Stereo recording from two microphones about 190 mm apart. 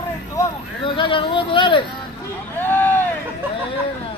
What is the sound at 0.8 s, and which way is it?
Speech, 25° left (ahead or behind).